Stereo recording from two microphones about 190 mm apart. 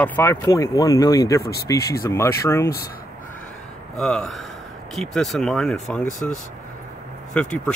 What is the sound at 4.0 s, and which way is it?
Speech, 5° left (ahead or behind).